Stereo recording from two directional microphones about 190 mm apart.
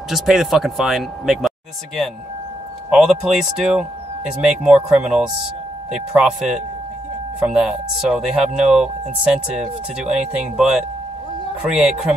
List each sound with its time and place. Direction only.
0.1 s speech: centre (ahead or behind)
2.9 s speech: 5° right (ahead or behind)